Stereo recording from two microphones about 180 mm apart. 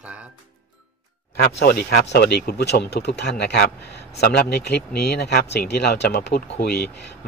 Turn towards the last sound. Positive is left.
turn(degrees=65)  # may be behind; listen again after turning